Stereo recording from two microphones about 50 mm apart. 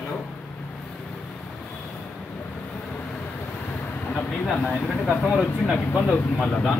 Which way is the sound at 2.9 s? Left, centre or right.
Left.